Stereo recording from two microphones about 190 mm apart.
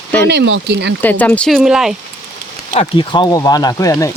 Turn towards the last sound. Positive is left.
turn(degrees=15)  # may be behind; listen again after turning